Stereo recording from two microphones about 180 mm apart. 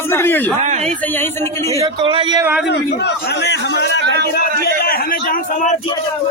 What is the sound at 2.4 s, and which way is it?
Speech, 10° right (ahead or behind).